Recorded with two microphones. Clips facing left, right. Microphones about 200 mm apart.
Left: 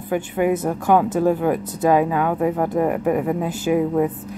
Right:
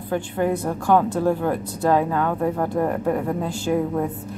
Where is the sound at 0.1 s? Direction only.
15° left (ahead or behind).